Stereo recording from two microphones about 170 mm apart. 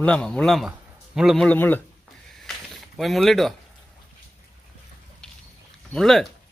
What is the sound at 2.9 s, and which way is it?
Speech, centre (ahead or behind).